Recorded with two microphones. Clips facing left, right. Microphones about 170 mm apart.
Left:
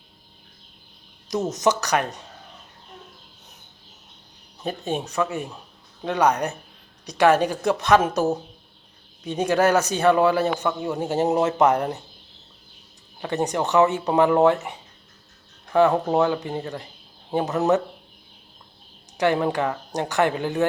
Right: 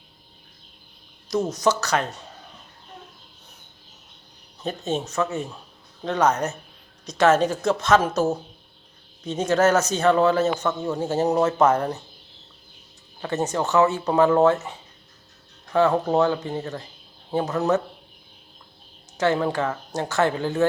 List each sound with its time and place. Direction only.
1.3 s a man's voice: 20° left (ahead or behind)
4.6 s a man's voice: 10° left (ahead or behind)
13.2 s a man's voice: 15° left (ahead or behind)
19.1 s a man's voice: 15° left (ahead or behind)